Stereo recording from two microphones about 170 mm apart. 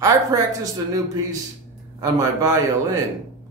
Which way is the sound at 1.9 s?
20° right (ahead or behind).